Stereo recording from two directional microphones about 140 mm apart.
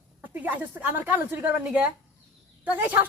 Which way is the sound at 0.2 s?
10° right (ahead or behind).